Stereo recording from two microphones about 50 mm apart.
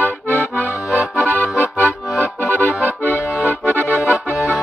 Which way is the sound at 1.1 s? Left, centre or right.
Left.